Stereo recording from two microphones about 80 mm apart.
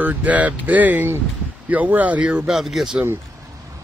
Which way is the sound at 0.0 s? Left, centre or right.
Centre.